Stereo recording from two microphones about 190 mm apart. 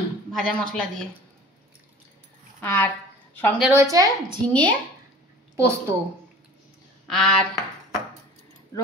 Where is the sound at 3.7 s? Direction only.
15° right (ahead or behind).